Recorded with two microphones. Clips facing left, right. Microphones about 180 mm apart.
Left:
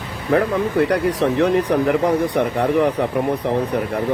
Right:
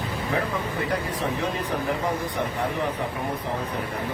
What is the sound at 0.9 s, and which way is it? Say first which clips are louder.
Speech: left 9 dB; 80° left.